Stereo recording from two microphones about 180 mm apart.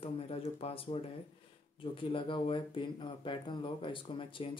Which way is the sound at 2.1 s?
30° left (ahead or behind).